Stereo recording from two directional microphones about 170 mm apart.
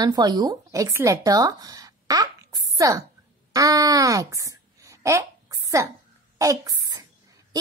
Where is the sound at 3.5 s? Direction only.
20° right (ahead or behind).